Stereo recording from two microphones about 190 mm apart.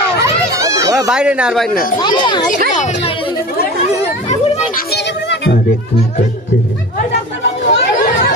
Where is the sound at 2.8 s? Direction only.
40° left (ahead or behind).